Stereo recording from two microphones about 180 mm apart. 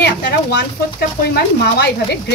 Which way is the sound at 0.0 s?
65° left (ahead or behind).